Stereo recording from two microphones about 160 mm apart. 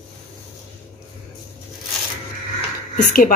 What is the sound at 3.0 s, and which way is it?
Speech, 60° left (ahead or behind).